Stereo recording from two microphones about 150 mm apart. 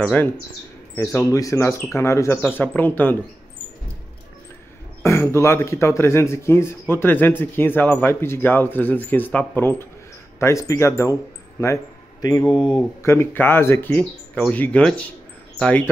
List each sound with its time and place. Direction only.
0.0 s speech: 10° left (ahead or behind)
5.0 s a man's voice: 15° left (ahead or behind)
12.4 s speech: 5° left (ahead or behind)
13.0 s speech: 15° left (ahead or behind)